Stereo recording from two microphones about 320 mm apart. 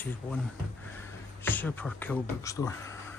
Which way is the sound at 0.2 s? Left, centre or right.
Centre.